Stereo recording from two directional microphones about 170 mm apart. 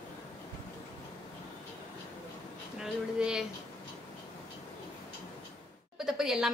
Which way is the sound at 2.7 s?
5° right (ahead or behind).